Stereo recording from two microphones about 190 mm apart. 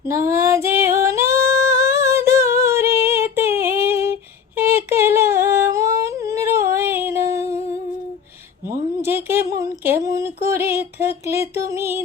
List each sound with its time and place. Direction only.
0.0 s female singing: 15° right (ahead or behind)
1.5 s humming: 15° right (ahead or behind)
6.7 s yodeling: 10° right (ahead or behind)
8.7 s a sound: 15° right (ahead or behind)